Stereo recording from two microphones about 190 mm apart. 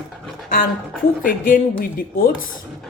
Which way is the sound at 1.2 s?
50° left (ahead or behind).